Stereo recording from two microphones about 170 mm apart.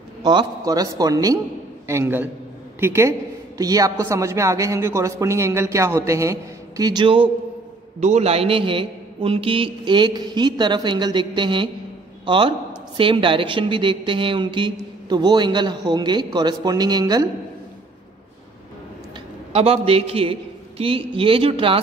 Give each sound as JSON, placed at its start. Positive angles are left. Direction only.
{"t": 0.2, "sound": "a woman's voice", "side_deg": -25}
{"t": 8.0, "sound": "a woman's voice", "side_deg": -40}
{"t": 19.5, "sound": "a man's voice", "side_deg": -35}